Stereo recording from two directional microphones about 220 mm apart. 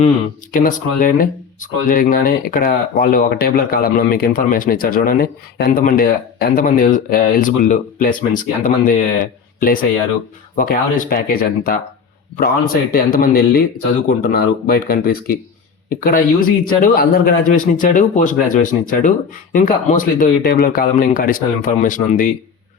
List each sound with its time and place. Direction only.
0.5 s speech: 40° left (ahead or behind)